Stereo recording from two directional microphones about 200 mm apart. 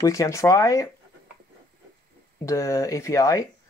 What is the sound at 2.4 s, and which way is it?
Speech, 15° left (ahead or behind).